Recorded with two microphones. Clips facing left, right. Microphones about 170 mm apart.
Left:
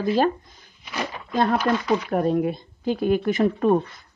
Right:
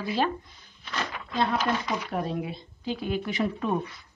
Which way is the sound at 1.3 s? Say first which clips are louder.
Left 5 dB; 50° left (ahead or behind).